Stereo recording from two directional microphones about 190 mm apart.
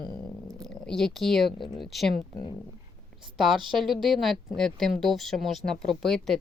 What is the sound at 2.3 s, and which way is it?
Speech, 20° left (ahead or behind).